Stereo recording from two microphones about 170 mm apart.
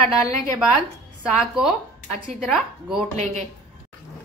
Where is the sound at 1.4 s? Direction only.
5° right (ahead or behind).